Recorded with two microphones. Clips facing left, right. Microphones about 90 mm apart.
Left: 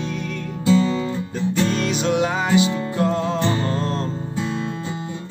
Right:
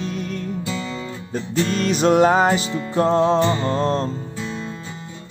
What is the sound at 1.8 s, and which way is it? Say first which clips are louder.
Music: right 4 dB; 40° right (ahead or behind).